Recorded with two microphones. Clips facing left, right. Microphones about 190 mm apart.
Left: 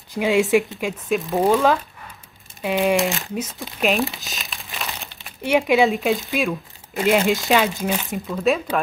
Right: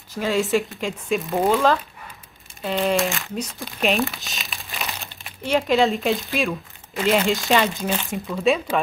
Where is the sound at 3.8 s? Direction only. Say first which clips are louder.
Left 1 dB; centre (ahead or behind).